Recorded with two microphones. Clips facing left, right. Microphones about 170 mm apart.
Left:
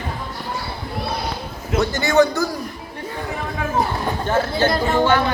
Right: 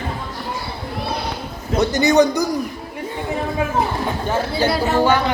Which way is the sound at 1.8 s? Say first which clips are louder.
Right 2 dB; 20° right (ahead or behind).